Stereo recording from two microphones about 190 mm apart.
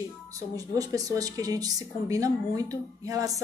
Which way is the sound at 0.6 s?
20° right (ahead or behind).